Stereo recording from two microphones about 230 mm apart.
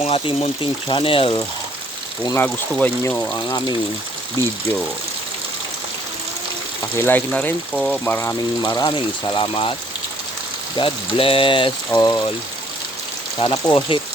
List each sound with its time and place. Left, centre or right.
0.0 s speech: left
2.2 s speech: centre
3.3 s speech: centre
6.9 s speech: centre
8.6 s speech: centre
10.8 s speech: left
13.4 s speech: centre